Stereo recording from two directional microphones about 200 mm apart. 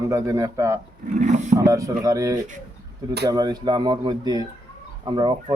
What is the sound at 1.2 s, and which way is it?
Speech, 35° right (ahead or behind).